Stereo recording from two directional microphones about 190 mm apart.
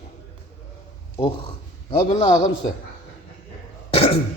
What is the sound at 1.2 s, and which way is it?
Speech, 25° left (ahead or behind).